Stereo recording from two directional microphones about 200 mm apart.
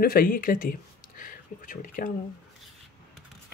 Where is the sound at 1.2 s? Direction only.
40° left (ahead or behind).